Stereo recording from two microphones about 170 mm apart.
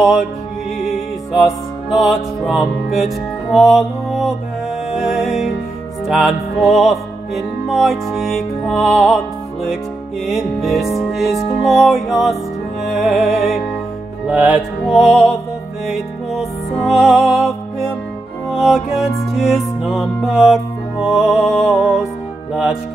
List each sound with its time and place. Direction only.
0.0 s music: centre (ahead or behind)
1.4 s music: centre (ahead or behind)